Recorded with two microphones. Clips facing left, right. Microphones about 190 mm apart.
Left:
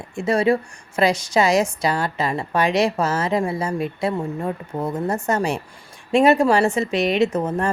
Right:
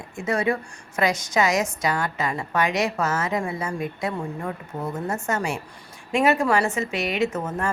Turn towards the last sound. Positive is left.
turn(degrees=35)  # may be behind; listen again after turning